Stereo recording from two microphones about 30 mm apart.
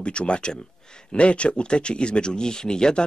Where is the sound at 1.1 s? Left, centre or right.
Left.